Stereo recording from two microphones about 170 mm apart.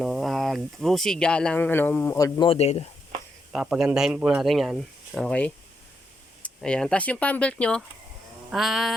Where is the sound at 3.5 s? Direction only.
5° right (ahead or behind).